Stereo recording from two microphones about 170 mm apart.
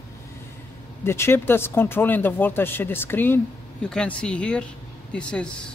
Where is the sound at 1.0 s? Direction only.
15° left (ahead or behind).